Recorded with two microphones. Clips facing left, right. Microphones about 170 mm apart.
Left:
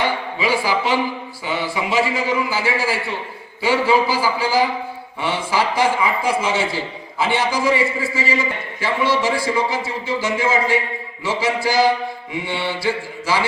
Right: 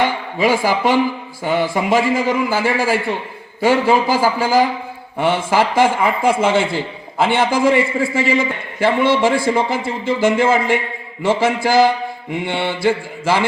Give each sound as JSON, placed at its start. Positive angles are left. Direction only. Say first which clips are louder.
{"t": 0.0, "sound": "a man's voice", "louder": "right 4 dB", "side_deg": -45}